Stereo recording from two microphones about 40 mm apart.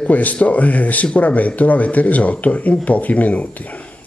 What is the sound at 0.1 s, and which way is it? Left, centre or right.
Speech, left.